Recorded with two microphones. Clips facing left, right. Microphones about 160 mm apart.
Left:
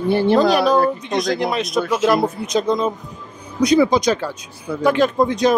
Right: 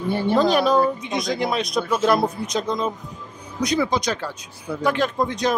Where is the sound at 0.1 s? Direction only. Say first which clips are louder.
Left 6 dB; 90° left.